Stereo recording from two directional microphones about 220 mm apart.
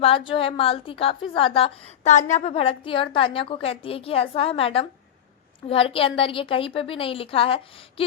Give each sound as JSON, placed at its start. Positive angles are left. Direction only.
{"t": 0.0, "sound": "a woman's voice", "side_deg": 25}